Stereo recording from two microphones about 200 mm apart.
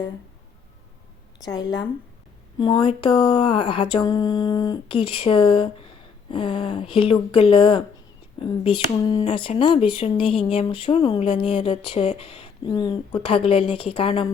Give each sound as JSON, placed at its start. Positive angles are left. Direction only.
{"t": 1.4, "sound": "speech", "side_deg": 20}